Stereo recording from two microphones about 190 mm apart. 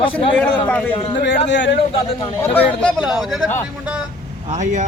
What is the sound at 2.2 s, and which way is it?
Speech, 10° left (ahead or behind).